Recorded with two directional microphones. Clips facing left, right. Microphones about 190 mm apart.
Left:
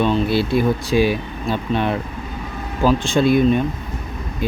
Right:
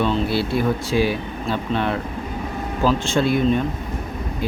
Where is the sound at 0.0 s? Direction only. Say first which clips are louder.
Left 3 dB; 15° left (ahead or behind).